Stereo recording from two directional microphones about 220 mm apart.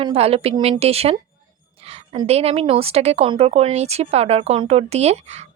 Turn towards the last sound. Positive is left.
turn(degrees=-30)  # may be behind; listen again after turning